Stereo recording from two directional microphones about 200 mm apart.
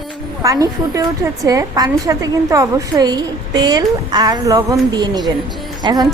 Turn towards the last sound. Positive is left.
turn(degrees=-20)  # may be behind; listen again after turning